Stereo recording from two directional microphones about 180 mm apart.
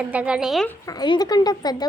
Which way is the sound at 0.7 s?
20° left (ahead or behind).